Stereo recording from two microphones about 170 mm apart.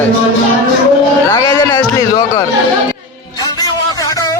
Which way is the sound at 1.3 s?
15° left (ahead or behind).